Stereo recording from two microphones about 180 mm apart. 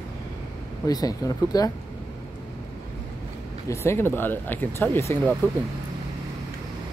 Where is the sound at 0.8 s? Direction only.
20° left (ahead or behind).